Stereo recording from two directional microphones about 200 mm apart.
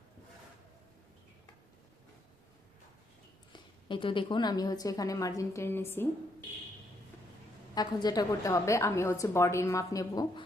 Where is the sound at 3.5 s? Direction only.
25° left (ahead or behind).